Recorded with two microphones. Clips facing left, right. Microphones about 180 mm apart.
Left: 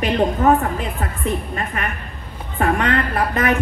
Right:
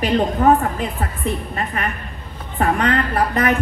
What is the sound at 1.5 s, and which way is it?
Speech, 35° right (ahead or behind).